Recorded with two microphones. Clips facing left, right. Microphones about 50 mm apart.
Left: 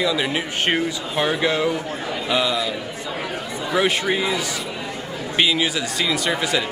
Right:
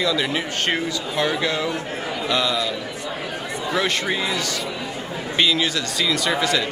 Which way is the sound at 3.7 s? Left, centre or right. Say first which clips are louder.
Left 3 dB; centre.